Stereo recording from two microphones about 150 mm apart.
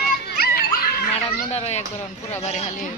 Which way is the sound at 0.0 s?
85° left.